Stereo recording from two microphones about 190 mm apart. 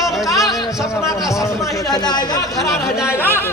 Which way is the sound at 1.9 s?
20° left (ahead or behind).